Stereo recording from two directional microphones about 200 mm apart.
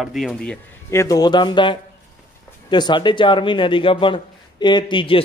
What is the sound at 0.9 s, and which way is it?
Speech, 15° left (ahead or behind).